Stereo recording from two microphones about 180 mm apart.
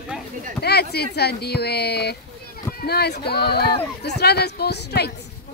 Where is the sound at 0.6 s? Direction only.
65° left (ahead or behind).